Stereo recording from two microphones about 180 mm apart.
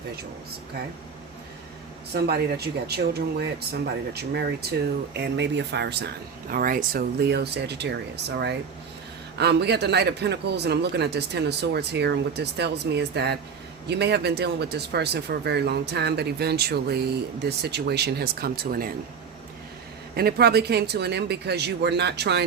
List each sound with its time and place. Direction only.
2.1 s a man's voice: 60° right (ahead or behind)
6.5 s a man's voice: 50° right (ahead or behind)
20.1 s a man's voice: 60° right (ahead or behind)